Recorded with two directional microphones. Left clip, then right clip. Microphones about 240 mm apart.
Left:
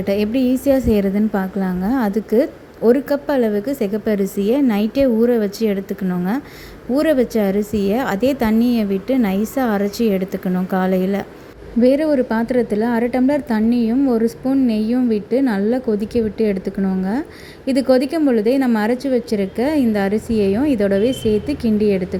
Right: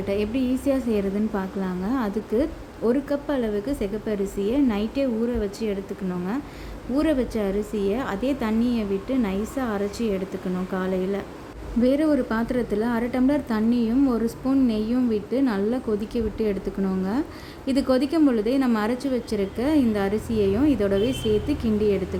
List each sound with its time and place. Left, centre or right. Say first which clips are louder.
0.0 s a woman's voice: left 7 dB; centre